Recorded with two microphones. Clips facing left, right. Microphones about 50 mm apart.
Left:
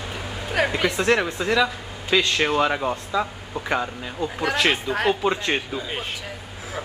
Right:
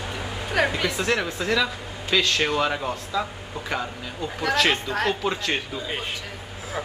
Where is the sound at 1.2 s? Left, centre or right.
Centre.